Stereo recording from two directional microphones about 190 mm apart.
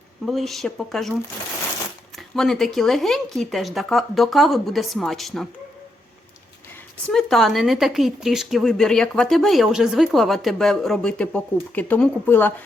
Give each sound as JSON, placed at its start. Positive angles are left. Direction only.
{"t": 0.3, "sound": "a woman's voice", "side_deg": 0}
{"t": 2.1, "sound": "a woman's voice", "side_deg": 0}
{"t": 7.1, "sound": "a woman's voice", "side_deg": 0}